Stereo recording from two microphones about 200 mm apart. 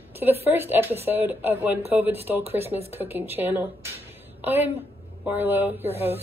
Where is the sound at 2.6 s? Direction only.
30° right (ahead or behind).